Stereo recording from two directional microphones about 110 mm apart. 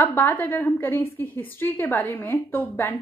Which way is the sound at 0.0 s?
15° left (ahead or behind).